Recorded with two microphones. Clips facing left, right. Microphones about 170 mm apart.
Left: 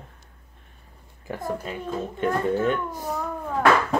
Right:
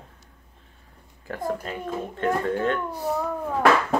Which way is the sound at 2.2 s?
10° left (ahead or behind).